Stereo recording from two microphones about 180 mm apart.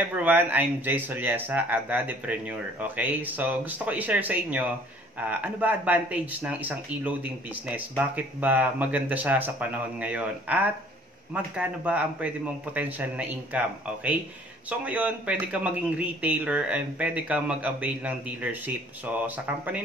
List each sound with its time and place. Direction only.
0.1 s speech: 10° right (ahead or behind)